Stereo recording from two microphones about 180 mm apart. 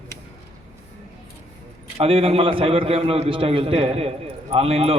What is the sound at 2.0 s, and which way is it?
A man's voice, 30° right (ahead or behind).